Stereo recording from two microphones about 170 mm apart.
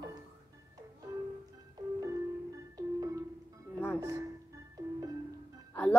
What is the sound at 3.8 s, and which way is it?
Music, 15° left (ahead or behind).